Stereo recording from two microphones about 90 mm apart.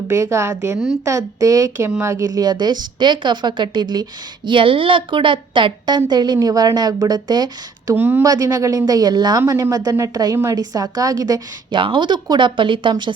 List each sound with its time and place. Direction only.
0.1 s speech: 35° right (ahead or behind)
2.3 s a woman's voice: 50° right (ahead or behind)
4.4 s a woman's voice: 75° right (ahead or behind); by 7.9 s 50° right (ahead or behind)
7.9 s a woman's voice: 20° right (ahead or behind)
8.2 s a woman's voice: 40° right (ahead or behind)
11.7 s speech: 65° right (ahead or behind)